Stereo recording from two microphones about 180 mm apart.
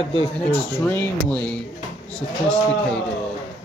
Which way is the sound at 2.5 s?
5° left (ahead or behind).